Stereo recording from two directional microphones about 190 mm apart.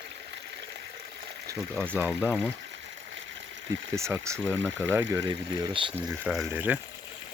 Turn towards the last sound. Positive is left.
turn(degrees=-10)  # may be behind; listen again after turning